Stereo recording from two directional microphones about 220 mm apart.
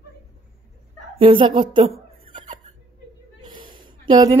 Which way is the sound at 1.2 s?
25° right (ahead or behind).